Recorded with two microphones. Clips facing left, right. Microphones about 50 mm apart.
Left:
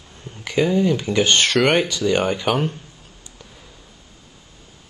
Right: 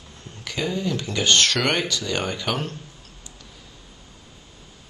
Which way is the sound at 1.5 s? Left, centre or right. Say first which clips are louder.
Left 6 dB; centre.